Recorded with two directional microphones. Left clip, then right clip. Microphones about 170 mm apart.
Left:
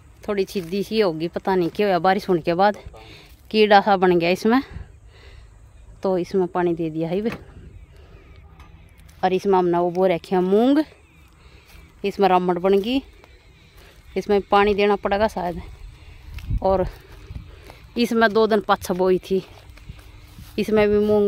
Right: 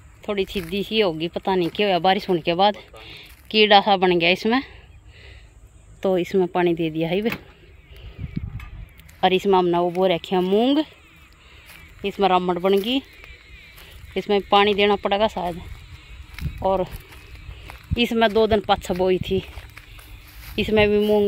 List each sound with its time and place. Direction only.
0.2 s speech: 10° left (ahead or behind)
5.9 s speech: centre (ahead or behind)
9.2 s speech: centre (ahead or behind); by 10.9 s 15° left (ahead or behind)
12.0 s speech: 10° left (ahead or behind)
14.1 s speech: 10° left (ahead or behind)
16.5 s speech: 25° left (ahead or behind)
17.9 s speech: 15° left (ahead or behind)
20.5 s speech: 10° left (ahead or behind)